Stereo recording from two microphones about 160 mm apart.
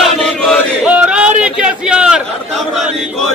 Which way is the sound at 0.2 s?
5° left (ahead or behind).